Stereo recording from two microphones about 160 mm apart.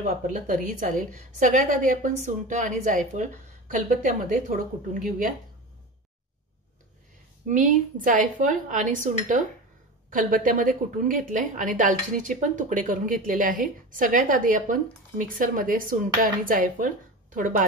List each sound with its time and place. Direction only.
0.3 s a woman's voice: 55° right (ahead or behind)
7.4 s a woman's voice: 50° right (ahead or behind)